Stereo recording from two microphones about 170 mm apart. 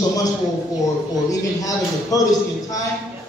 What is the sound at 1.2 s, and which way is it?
Speech, 20° left (ahead or behind).